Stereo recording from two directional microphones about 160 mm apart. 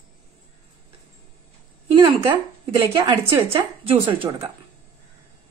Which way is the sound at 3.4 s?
35° right (ahead or behind).